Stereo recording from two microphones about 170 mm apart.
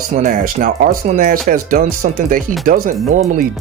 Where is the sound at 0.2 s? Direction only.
50° right (ahead or behind).